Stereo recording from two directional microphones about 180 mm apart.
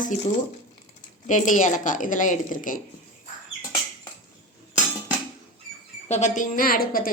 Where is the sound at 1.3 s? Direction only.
45° left (ahead or behind).